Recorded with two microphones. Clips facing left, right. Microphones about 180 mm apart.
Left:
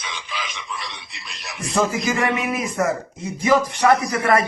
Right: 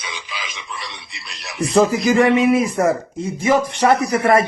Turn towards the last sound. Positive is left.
turn(degrees=-25)  # may be behind; listen again after turning